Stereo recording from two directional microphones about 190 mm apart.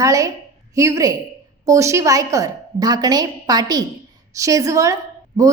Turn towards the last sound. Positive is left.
turn(degrees=-15)  # may be behind; listen again after turning